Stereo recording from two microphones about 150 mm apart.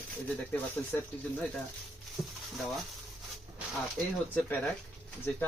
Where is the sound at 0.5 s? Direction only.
10° left (ahead or behind).